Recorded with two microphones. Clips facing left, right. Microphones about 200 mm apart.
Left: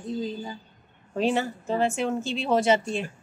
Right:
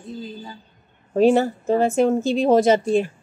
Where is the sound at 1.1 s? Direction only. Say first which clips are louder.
Right 9 dB; 45° right (ahead or behind).